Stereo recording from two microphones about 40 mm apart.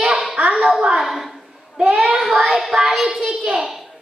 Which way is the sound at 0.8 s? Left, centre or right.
Right.